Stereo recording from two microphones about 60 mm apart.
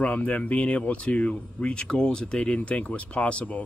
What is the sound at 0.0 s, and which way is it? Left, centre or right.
Speech, left.